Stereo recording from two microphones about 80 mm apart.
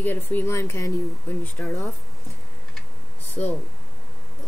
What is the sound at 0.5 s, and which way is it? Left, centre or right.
Speech, left.